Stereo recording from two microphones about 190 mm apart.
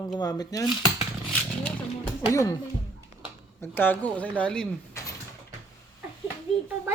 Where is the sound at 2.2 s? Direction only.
15° left (ahead or behind).